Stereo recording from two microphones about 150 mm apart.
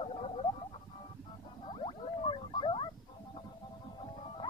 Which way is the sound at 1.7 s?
35° left (ahead or behind).